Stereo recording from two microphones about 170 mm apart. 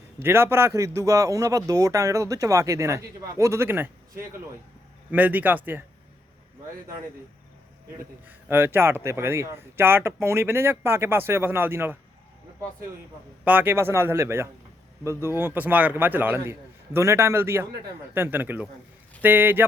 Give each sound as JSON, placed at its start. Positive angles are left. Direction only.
{"t": 0.2, "sound": "a man's voice", "side_deg": -15}
{"t": 5.1, "sound": "speech", "side_deg": -10}
{"t": 8.3, "sound": "speech", "side_deg": -15}
{"t": 13.4, "sound": "speech", "side_deg": -10}